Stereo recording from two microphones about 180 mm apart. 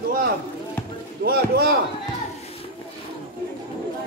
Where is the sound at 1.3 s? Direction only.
60° right (ahead or behind).